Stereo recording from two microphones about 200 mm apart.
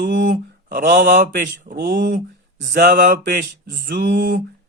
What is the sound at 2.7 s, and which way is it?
Speech, 45° right (ahead or behind).